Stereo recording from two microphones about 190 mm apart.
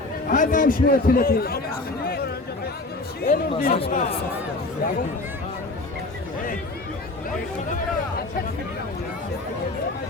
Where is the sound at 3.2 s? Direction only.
50° left (ahead or behind).